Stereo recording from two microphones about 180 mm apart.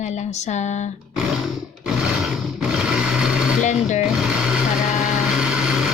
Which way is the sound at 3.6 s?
40° left (ahead or behind).